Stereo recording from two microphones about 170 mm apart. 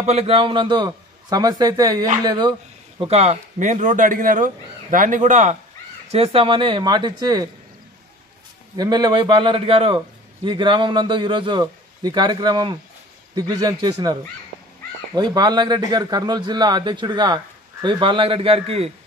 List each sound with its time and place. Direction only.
0.0 s a man's voice: 35° right (ahead or behind)
3.0 s a man's voice: 40° right (ahead or behind); by 7.4 s 25° right (ahead or behind)
8.7 s a man's voice: 25° right (ahead or behind)
15.1 s a man's voice: 25° right (ahead or behind)